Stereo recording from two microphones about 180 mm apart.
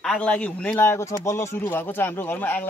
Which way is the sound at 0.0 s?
5° left (ahead or behind).